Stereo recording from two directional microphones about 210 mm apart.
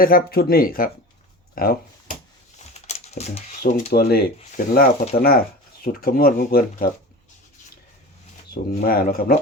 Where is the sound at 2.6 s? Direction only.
30° left (ahead or behind).